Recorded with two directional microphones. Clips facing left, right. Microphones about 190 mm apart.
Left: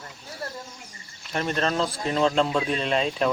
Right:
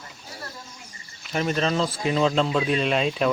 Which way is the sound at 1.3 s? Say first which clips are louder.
Right 2 dB; 5° right (ahead or behind).